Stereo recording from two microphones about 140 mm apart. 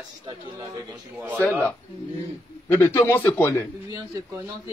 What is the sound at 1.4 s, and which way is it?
A man's voice, 10° left (ahead or behind).